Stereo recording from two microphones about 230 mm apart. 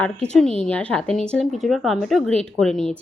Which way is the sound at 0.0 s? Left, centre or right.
Centre.